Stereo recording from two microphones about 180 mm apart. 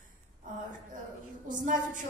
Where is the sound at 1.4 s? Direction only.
45° right (ahead or behind).